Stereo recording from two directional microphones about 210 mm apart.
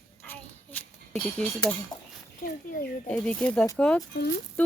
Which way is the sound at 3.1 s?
5° left (ahead or behind).